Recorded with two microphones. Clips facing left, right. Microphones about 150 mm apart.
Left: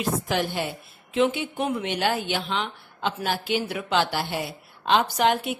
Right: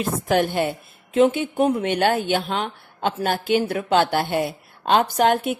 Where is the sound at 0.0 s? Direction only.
50° right (ahead or behind).